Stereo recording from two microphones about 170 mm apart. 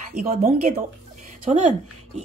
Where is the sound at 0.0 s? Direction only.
45° right (ahead or behind).